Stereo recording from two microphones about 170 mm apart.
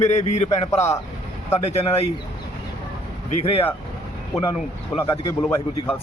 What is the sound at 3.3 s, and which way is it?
Speech, 35° left (ahead or behind).